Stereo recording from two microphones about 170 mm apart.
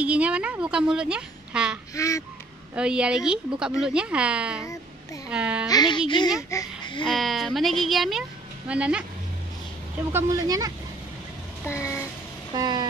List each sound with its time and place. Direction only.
0.0 s a woman's voice: 5° right (ahead or behind)
2.0 s speech: 20° left (ahead or behind)
2.7 s a woman's voice: 5° right (ahead or behind)
5.7 s speech: 25° left (ahead or behind)
7.1 s speech: centre (ahead or behind)
10.1 s speech: 20° right (ahead or behind)
11.6 s a sound: 15° left (ahead or behind)
12.5 s speech: 25° right (ahead or behind)